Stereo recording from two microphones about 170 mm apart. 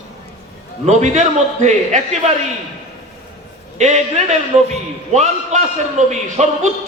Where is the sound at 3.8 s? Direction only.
45° right (ahead or behind).